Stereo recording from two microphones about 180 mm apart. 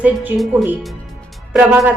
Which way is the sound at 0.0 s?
5° right (ahead or behind).